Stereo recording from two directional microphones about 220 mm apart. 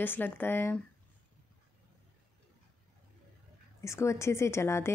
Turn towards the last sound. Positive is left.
turn(degrees=10)  # may be behind; listen again after turning